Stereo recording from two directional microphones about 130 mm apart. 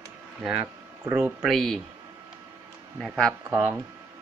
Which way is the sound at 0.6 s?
15° right (ahead or behind).